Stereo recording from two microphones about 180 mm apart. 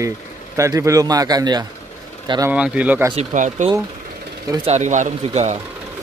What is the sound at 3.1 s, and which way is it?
Speech, 40° right (ahead or behind).